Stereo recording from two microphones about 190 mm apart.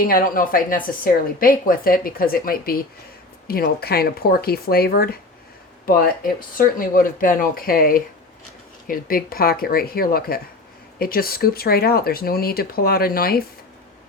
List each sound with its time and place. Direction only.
0.0 s speech: 50° left (ahead or behind)